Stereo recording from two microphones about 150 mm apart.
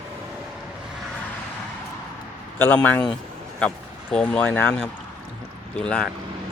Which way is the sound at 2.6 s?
10° left (ahead or behind).